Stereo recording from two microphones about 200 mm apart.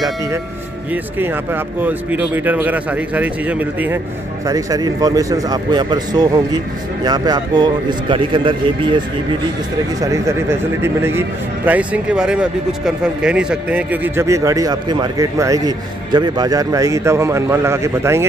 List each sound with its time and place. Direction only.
1.1 s a man's voice: 10° right (ahead or behind)